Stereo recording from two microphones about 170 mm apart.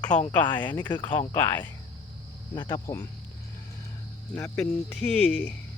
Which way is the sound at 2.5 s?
25° left (ahead or behind).